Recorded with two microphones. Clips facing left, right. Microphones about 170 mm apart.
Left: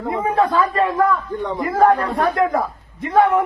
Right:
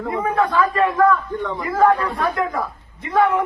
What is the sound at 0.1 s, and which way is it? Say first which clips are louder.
Speech: left 2 dB; 30° left (ahead or behind).